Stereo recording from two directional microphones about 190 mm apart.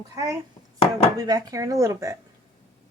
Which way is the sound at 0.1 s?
15° right (ahead or behind).